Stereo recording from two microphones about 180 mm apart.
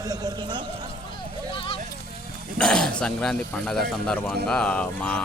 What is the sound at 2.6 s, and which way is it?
Speech, 5° left (ahead or behind).